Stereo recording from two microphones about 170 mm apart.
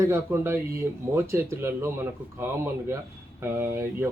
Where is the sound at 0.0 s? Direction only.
15° right (ahead or behind).